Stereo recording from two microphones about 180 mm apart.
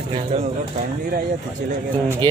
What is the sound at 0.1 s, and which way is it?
Speech, 35° right (ahead or behind).